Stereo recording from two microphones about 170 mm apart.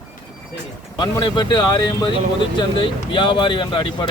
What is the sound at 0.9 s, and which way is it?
Speech, 25° left (ahead or behind).